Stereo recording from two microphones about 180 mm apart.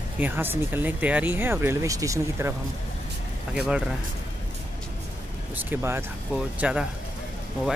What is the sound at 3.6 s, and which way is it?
Speech, 5° right (ahead or behind).